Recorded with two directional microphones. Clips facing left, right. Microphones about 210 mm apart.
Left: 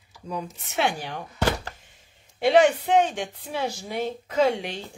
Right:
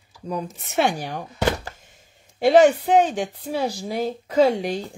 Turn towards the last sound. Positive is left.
turn(degrees=-40)  # may be behind; listen again after turning